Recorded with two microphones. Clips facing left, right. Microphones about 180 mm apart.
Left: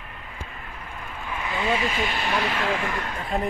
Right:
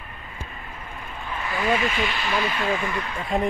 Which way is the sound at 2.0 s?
45° left (ahead or behind).